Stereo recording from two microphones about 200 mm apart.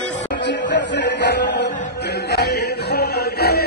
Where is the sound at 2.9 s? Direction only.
50° left (ahead or behind).